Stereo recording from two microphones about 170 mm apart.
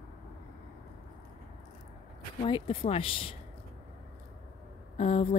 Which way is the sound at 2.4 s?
30° left (ahead or behind).